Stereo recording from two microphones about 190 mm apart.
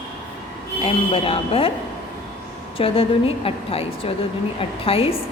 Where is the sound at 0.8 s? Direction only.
30° left (ahead or behind).